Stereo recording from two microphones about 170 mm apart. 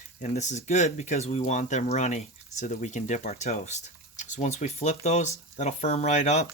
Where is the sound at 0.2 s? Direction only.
45° left (ahead or behind).